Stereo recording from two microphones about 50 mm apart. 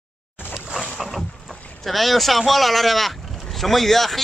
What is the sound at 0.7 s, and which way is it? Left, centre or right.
Boat, centre.